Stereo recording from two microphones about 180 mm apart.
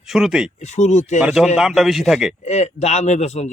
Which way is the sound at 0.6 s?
40° left (ahead or behind).